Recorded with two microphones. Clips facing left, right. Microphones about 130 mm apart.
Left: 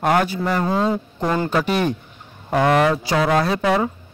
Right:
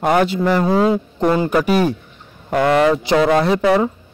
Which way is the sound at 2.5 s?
5° left (ahead or behind).